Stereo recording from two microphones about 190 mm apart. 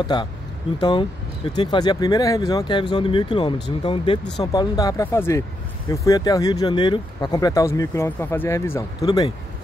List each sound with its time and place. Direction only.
0.0 s speech: 25° left (ahead or behind)